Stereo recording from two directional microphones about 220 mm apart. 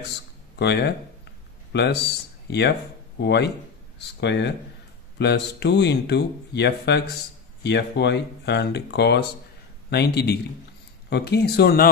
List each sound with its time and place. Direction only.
0.6 s speech: 50° left (ahead or behind)